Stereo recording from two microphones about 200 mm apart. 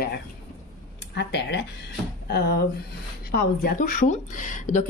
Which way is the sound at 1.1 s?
60° left (ahead or behind).